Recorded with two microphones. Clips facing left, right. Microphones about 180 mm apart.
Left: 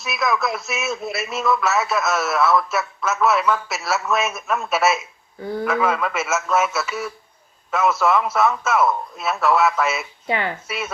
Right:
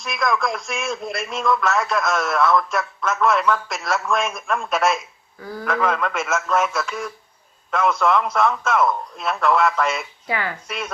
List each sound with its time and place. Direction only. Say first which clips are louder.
0.0 s speech: even; 5° left (ahead or behind)
5.4 s a man's voice: left 6 dB; 25° left (ahead or behind)
5.6 s speech: even; 5° left (ahead or behind)
10.2 s a man's voice: left 3 dB; 25° left (ahead or behind)
10.7 s speech: left 1 dB; 5° left (ahead or behind)